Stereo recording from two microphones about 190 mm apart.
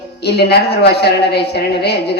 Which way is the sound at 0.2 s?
60° left (ahead or behind).